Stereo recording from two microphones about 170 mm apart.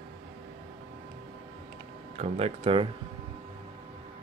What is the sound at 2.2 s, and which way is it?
Speech, 35° right (ahead or behind).